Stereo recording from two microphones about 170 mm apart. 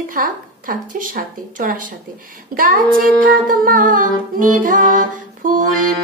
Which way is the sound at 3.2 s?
55° right (ahead or behind).